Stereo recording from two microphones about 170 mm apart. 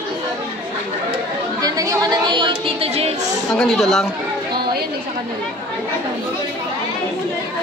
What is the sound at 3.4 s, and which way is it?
Speech, centre (ahead or behind).